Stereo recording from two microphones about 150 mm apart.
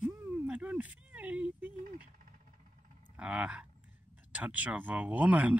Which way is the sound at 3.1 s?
10° right (ahead or behind).